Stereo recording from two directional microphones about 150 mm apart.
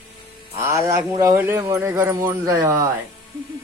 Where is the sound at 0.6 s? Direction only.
20° right (ahead or behind).